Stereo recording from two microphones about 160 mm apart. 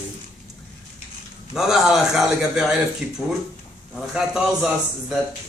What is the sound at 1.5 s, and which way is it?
Speech, centre (ahead or behind).